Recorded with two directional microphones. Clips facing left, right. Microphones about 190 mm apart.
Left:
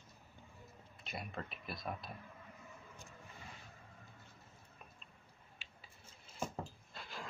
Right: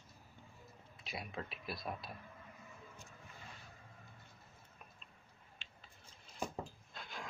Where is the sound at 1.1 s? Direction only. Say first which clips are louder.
Even; centre (ahead or behind).